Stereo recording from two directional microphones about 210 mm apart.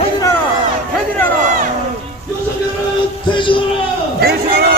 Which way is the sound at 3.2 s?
25° left (ahead or behind).